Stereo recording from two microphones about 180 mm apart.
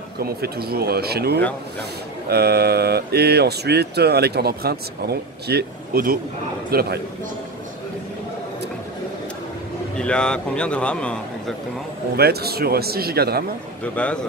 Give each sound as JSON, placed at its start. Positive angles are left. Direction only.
{"t": 0.2, "sound": "speech", "side_deg": -60}
{"t": 9.9, "sound": "a man's voice", "side_deg": 5}
{"t": 12.2, "sound": "speech", "side_deg": -60}
{"t": 13.9, "sound": "speech", "side_deg": 5}